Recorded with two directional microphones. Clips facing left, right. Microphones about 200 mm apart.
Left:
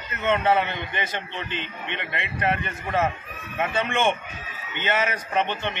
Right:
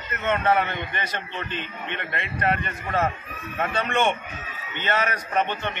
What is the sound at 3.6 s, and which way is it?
Speech, 10° left (ahead or behind).